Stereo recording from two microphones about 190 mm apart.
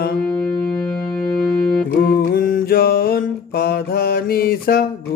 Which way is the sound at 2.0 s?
50° left (ahead or behind).